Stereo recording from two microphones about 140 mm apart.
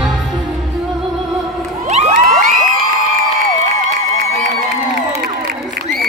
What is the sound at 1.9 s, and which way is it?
Crowd, 50° right (ahead or behind).